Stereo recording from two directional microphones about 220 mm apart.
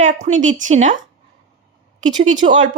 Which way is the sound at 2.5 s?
35° right (ahead or behind).